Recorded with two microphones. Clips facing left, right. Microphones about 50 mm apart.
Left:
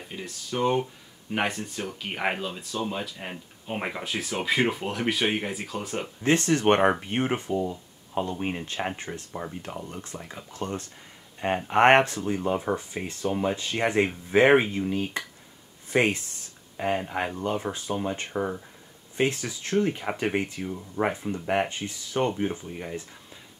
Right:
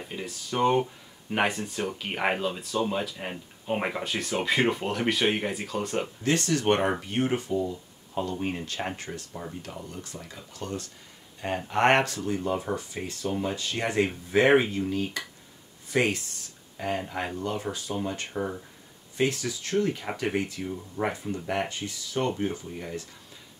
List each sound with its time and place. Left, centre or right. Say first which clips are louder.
0.1 s speech: even; centre
6.2 s speech: left 4 dB; left